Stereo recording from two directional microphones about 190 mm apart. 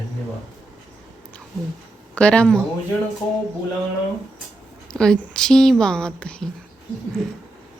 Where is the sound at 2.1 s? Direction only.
5° left (ahead or behind).